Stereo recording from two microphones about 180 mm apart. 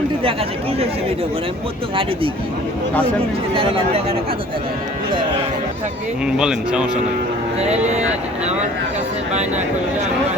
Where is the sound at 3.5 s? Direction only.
30° right (ahead or behind).